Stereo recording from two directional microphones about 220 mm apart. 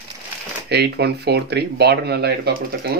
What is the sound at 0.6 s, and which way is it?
Speech, 50° right (ahead or behind).